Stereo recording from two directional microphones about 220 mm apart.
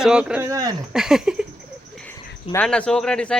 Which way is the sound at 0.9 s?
Centre (ahead or behind).